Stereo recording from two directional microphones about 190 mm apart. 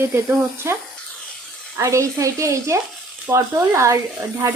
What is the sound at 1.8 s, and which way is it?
Speech, 15° right (ahead or behind).